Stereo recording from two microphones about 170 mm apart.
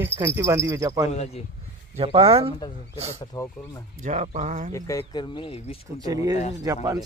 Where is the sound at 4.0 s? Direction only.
45° right (ahead or behind).